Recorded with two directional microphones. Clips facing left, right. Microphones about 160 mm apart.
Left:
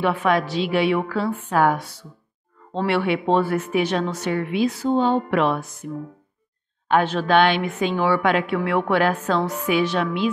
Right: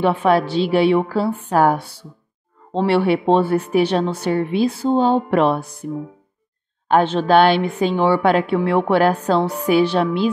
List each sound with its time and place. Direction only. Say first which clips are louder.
0.0 s a woman's voice: right 4 dB; 30° right (ahead or behind)
6.9 s a woman's voice: right 4 dB; 30° right (ahead or behind)